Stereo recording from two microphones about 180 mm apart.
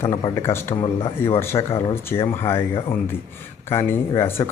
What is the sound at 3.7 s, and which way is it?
Speech, 15° left (ahead or behind).